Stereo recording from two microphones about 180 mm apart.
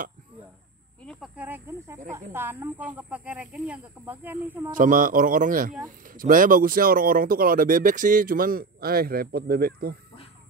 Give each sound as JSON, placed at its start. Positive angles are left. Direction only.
{"t": 1.0, "sound": "speech", "side_deg": -5}
{"t": 4.7, "sound": "speech", "side_deg": -50}